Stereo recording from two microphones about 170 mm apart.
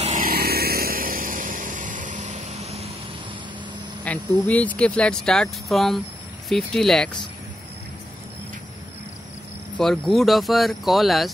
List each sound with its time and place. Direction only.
0.0 s vehicle: 50° right (ahead or behind)
4.0 s speech: 10° left (ahead or behind)
9.8 s speech: centre (ahead or behind)